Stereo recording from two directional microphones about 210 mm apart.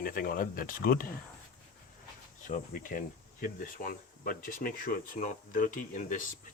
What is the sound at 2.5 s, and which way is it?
Speech, 40° left (ahead or behind).